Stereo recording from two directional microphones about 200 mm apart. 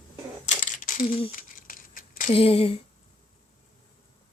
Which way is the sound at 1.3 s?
45° left (ahead or behind).